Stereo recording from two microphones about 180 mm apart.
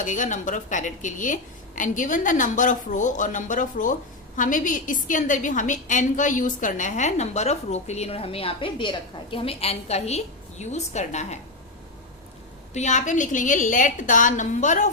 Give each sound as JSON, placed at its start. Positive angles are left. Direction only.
{"t": 0.0, "sound": "a woman's voice", "side_deg": 45}
{"t": 12.7, "sound": "a woman's voice", "side_deg": 40}